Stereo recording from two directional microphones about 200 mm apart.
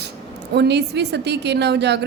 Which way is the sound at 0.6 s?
55° right (ahead or behind).